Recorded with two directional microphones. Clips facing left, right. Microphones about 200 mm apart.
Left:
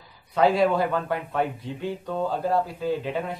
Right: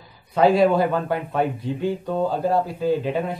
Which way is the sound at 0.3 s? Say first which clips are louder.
Right 4 dB; 35° right (ahead or behind).